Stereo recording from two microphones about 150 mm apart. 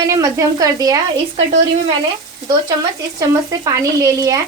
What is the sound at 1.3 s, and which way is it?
Speech, 40° right (ahead or behind).